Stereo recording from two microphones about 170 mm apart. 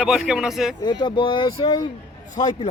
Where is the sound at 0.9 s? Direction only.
25° left (ahead or behind).